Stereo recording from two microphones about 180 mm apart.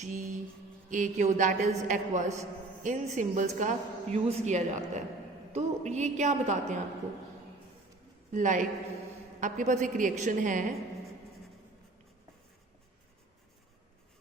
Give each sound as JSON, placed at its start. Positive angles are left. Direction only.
{"t": 0.0, "sound": "a woman's voice", "side_deg": -45}
{"t": 8.3, "sound": "a woman's voice", "side_deg": -45}